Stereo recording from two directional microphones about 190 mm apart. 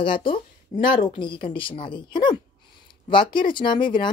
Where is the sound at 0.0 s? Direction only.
25° left (ahead or behind).